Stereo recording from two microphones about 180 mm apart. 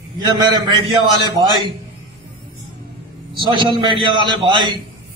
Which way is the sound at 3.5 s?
25° right (ahead or behind).